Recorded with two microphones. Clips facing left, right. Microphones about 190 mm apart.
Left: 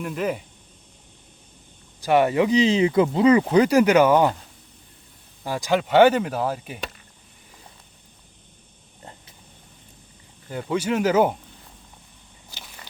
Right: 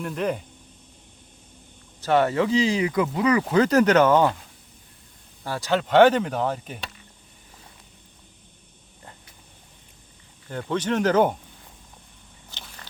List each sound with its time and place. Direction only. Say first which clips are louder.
0.0 s speech: even; 5° left (ahead or behind)
2.0 s speech: left 2 dB; 15° left (ahead or behind)
5.4 s speech: left 2 dB; 15° left (ahead or behind)
10.5 s speech: left 1 dB; 10° left (ahead or behind)
12.5 s biting: left 1 dB; 10° left (ahead or behind)